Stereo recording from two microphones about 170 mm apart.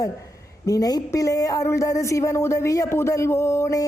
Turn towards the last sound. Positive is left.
turn(degrees=20)  # may be behind; listen again after turning